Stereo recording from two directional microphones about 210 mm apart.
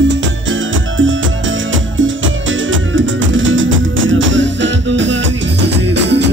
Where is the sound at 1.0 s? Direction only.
65° right (ahead or behind).